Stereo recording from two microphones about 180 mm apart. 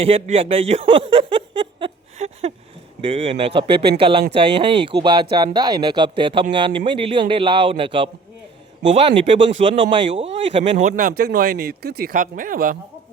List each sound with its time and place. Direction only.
0.0 s speech: 30° right (ahead or behind)
9.9 s speech: 30° right (ahead or behind); by 11.1 s 45° right (ahead or behind)
11.2 s speech: 60° right (ahead or behind)